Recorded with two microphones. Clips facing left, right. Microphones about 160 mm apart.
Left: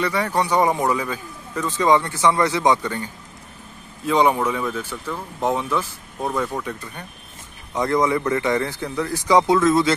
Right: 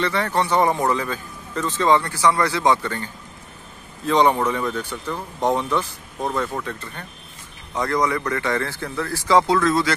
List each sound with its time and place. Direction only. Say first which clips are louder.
0.0 s a man's voice: even; 10° left (ahead or behind)